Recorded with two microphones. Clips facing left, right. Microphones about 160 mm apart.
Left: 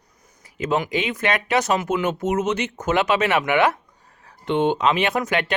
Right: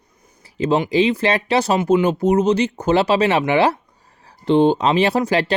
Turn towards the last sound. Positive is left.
turn(degrees=-35)  # may be behind; listen again after turning